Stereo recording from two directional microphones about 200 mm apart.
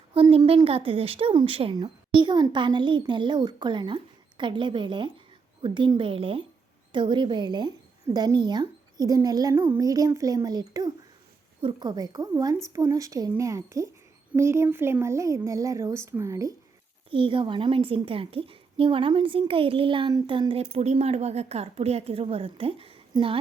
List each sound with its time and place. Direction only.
0.1 s a woman's voice: 30° right (ahead or behind)